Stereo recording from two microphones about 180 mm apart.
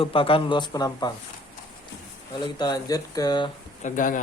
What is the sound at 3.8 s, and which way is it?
Speech, 50° left (ahead or behind).